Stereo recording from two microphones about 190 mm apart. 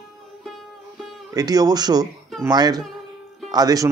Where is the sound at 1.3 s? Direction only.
20° right (ahead or behind).